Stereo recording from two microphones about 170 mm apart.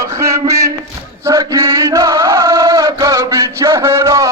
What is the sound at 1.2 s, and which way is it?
Chant, 20° right (ahead or behind).